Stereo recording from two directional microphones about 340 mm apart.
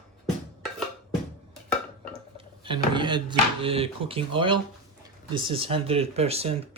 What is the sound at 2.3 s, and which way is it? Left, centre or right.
Speech, centre.